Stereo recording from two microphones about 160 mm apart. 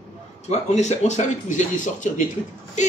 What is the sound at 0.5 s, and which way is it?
Speech, 45° left (ahead or behind).